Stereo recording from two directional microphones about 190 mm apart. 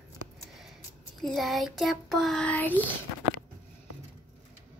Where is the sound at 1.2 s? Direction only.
Centre (ahead or behind).